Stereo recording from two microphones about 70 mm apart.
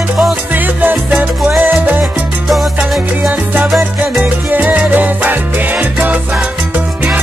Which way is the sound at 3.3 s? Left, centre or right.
Right.